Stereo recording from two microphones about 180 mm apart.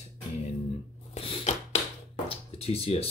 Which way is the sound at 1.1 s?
35° left (ahead or behind).